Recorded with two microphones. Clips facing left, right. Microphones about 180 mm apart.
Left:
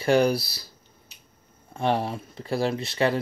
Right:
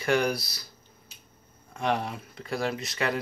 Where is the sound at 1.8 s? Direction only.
30° left (ahead or behind).